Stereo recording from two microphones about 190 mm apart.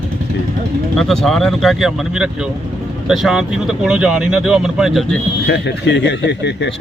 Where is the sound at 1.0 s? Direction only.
Centre (ahead or behind).